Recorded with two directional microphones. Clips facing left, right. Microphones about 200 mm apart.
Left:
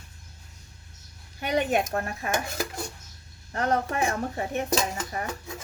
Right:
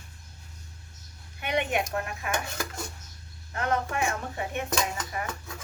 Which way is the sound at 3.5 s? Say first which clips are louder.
Left 3 dB; 35° left (ahead or behind).